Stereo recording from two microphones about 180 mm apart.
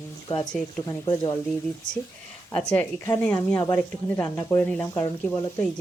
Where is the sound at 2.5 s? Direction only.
5° left (ahead or behind).